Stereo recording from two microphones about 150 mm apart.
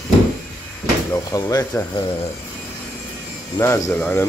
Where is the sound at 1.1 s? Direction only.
25° left (ahead or behind).